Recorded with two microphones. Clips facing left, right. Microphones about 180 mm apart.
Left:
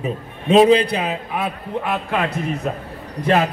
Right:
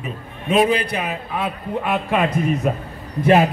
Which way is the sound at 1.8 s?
10° right (ahead or behind).